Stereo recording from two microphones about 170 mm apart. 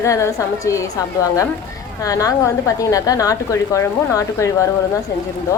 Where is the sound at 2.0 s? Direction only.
20° left (ahead or behind).